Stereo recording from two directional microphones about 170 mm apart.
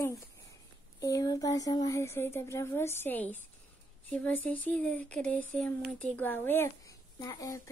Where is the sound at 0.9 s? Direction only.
20° left (ahead or behind).